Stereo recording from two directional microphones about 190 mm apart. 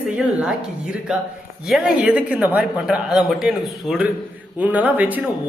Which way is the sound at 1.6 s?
5° right (ahead or behind).